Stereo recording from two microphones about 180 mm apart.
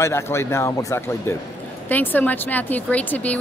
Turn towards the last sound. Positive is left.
turn(degrees=10)  # may be behind; listen again after turning